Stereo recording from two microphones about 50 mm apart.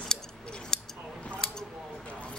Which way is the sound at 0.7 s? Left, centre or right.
Centre.